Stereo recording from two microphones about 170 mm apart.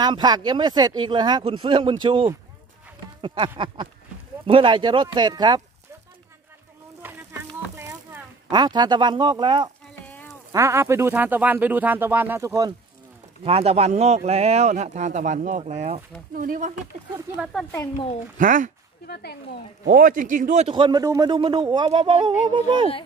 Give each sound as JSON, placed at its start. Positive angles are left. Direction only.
{"t": 0.0, "sound": "speech", "side_deg": -25}
{"t": 7.0, "sound": "a sound", "side_deg": -10}
{"t": 10.0, "sound": "a sound", "side_deg": 10}
{"t": 10.5, "sound": "speech", "side_deg": -15}
{"t": 13.4, "sound": "speech", "side_deg": -35}
{"t": 16.3, "sound": "speech", "side_deg": -50}
{"t": 17.5, "sound": "speech", "side_deg": 5}
{"t": 18.4, "sound": "speech", "side_deg": -50}
{"t": 19.0, "sound": "speech", "side_deg": 70}
{"t": 19.8, "sound": "speech", "side_deg": -60}
{"t": 20.6, "sound": "speech", "side_deg": -30}